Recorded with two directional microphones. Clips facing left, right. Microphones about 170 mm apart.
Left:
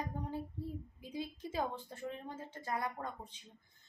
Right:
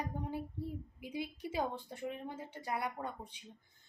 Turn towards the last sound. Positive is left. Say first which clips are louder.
# right 1 dB
turn(degrees=-10)  # may be behind; listen again after turning